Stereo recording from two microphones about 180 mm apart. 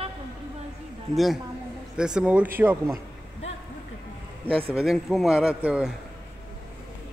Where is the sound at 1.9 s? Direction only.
5° right (ahead or behind).